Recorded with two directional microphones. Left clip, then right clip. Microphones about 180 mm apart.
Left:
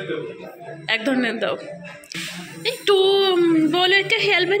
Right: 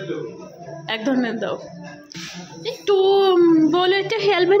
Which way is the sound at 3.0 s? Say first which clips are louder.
Right 2 dB; 30° right (ahead or behind).